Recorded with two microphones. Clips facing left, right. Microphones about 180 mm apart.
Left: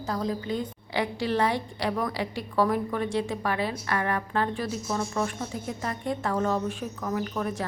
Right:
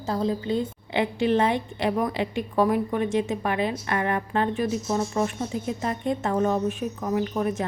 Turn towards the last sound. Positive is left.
turn(degrees=-20)  # may be behind; listen again after turning